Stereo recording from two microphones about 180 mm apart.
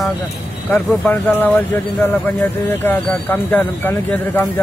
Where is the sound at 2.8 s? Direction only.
10° left (ahead or behind).